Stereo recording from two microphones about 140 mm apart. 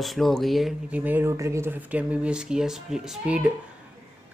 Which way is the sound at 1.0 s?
15° right (ahead or behind).